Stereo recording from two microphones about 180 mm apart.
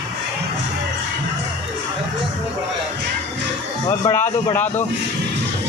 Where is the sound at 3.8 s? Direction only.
20° left (ahead or behind).